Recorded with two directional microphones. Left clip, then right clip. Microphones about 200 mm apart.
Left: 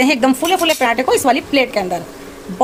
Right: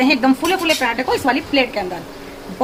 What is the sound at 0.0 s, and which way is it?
A woman's voice, 45° left (ahead or behind).